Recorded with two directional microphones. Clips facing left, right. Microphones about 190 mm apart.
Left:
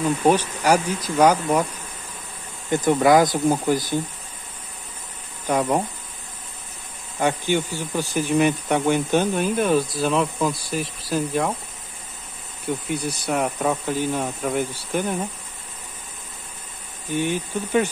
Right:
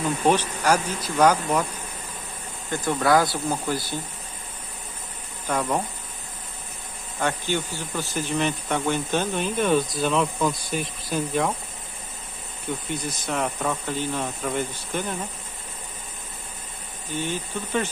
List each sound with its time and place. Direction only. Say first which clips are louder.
0.3 s speech: left 2 dB; 10° left (ahead or behind)
2.7 s speech: left 5 dB; 15° left (ahead or behind)
5.5 s speech: left 4 dB; 15° left (ahead or behind)
7.2 s speech: left 4 dB; 15° left (ahead or behind)
12.9 s speech: left 4 dB; 10° left (ahead or behind)
17.1 s speech: left 5 dB; 15° left (ahead or behind)